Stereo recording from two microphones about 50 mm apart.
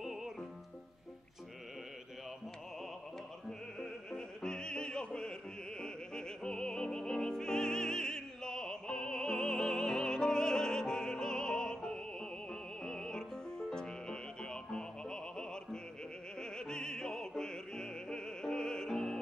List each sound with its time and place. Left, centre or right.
0.0 s music: centre
4.1 s opera: centre
5.8 s music: centre